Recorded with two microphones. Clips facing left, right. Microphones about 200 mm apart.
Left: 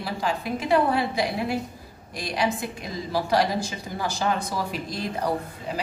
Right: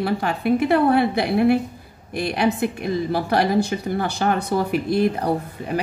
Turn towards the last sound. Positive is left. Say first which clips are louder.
# right 5 dB
turn(degrees=-60)  # may be behind; listen again after turning